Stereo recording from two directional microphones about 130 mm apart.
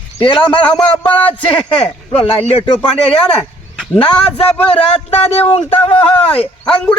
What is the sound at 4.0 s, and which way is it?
Speech, 45° left (ahead or behind).